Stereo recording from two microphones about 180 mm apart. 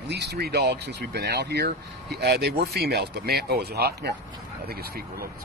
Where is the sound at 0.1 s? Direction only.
65° right (ahead or behind).